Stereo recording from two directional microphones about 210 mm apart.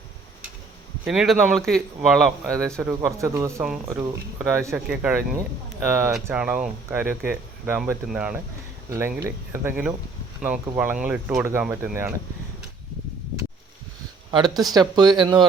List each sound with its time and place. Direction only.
1.0 s speech: 5° right (ahead or behind)
2.8 s speech: 15° right (ahead or behind)
3.6 s speech: 5° right (ahead or behind)
14.3 s speech: 20° right (ahead or behind)